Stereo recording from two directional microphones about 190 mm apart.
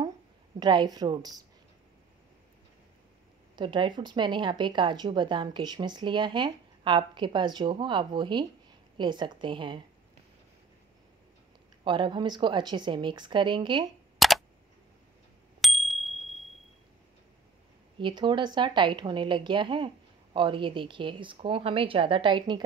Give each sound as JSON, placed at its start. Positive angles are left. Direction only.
{"t": 0.6, "sound": "speech", "side_deg": -20}
{"t": 3.5, "sound": "speech", "side_deg": -25}
{"t": 11.8, "sound": "speech", "side_deg": -25}
{"t": 14.1, "sound": "a sound", "side_deg": 0}
{"t": 15.6, "sound": "bicycle bell", "side_deg": 0}
{"t": 17.9, "sound": "speech", "side_deg": -25}